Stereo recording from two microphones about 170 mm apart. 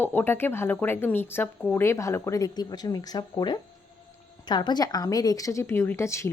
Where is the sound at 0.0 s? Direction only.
10° left (ahead or behind).